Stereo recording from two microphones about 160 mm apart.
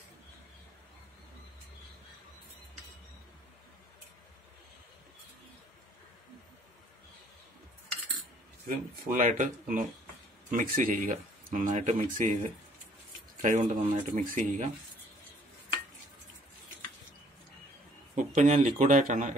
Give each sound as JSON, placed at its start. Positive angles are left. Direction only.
{"t": 8.6, "sound": "speech", "side_deg": -65}
{"t": 18.1, "sound": "speech", "side_deg": -50}